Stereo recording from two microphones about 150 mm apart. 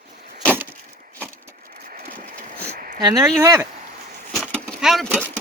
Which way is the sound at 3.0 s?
25° right (ahead or behind).